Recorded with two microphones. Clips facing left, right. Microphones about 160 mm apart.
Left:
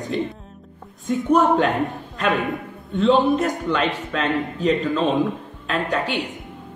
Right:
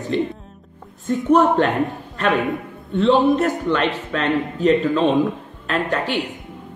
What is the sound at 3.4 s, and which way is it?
Speech, 5° left (ahead or behind).